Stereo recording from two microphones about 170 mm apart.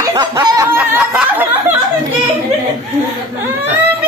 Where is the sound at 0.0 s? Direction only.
25° right (ahead or behind).